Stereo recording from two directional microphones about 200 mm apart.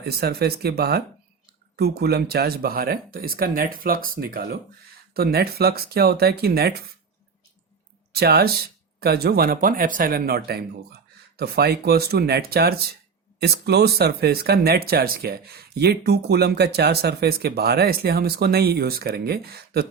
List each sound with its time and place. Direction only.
0.0 s speech: 50° right (ahead or behind)
8.1 s speech: 50° right (ahead or behind)